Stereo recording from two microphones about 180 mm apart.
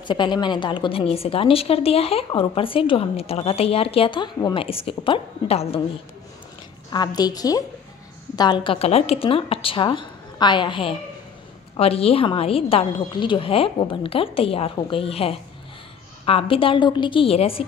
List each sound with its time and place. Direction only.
0.0 s a woman's voice: 25° left (ahead or behind)
6.9 s a woman's voice: 20° left (ahead or behind)